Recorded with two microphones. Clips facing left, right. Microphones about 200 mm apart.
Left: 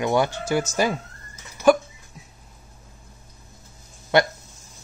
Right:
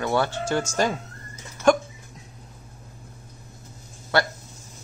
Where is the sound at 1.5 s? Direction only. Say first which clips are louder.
Left 2 dB; 5° left (ahead or behind).